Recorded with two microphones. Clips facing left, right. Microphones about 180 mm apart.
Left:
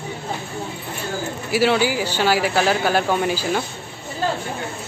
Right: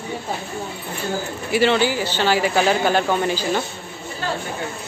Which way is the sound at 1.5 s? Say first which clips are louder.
Even; 5° left (ahead or behind).